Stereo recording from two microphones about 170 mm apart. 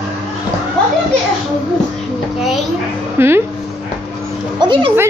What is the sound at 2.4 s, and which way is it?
Speech, centre (ahead or behind).